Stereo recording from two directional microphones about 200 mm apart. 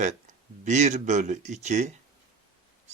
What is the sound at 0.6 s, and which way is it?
Speech, 35° right (ahead or behind).